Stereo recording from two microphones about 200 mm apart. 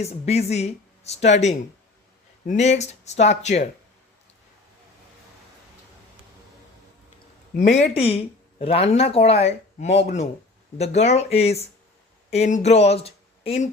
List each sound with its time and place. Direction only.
0.0 s speech: 30° left (ahead or behind)
7.5 s speech: 40° left (ahead or behind)